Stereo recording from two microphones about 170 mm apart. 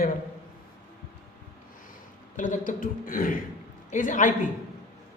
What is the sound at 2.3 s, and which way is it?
Speech, 50° left (ahead or behind).